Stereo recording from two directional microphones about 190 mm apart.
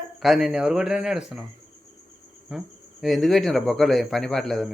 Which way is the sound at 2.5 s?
5° right (ahead or behind).